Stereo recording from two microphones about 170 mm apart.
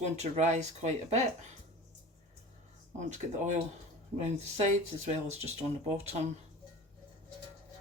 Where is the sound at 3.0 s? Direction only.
45° right (ahead or behind).